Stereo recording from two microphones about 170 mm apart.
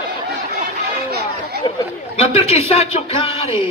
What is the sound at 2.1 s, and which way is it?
A man's voice, 35° left (ahead or behind).